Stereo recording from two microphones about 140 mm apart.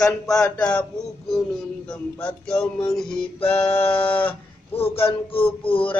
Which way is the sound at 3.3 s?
45° left (ahead or behind).